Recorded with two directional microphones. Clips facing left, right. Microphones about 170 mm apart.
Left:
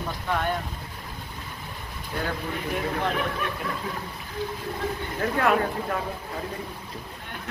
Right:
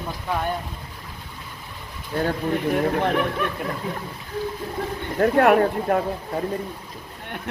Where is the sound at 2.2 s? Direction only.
50° right (ahead or behind).